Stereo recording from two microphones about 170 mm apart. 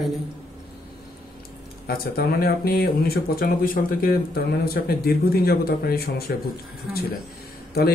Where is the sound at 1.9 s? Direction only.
65° left (ahead or behind).